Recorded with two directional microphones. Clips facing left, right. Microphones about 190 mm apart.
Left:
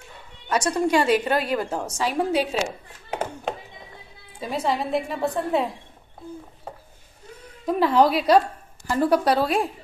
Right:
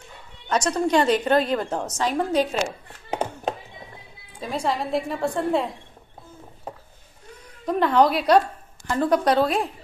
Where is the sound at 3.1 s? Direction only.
20° right (ahead or behind).